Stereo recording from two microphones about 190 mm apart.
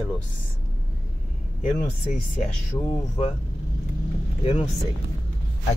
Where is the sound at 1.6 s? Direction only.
40° left (ahead or behind).